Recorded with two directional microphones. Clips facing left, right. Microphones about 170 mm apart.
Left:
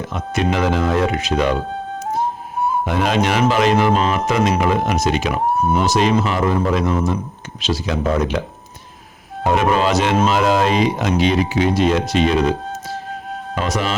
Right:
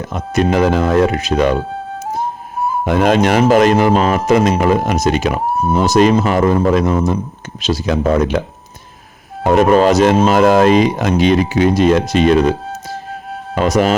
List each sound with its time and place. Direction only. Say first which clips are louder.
0.0 s speech: right 4 dB; 40° right (ahead or behind)
2.8 s speech: right 8 dB; 50° right (ahead or behind)
9.5 s speech: right 6 dB; 45° right (ahead or behind)
13.6 s speech: right 8 dB; 45° right (ahead or behind)